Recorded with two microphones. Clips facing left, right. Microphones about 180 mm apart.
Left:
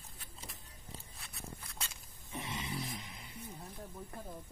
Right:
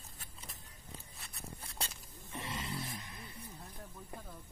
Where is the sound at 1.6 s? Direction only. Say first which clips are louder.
Right 3 dB; 35° right (ahead or behind).